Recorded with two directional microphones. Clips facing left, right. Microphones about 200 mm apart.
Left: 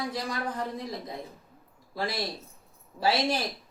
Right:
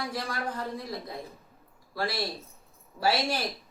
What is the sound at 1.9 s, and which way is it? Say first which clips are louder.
Speech: even; 20° left (ahead or behind).